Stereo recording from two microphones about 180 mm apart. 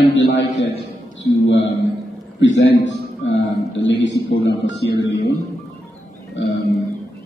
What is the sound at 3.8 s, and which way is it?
A man's voice, 90° left.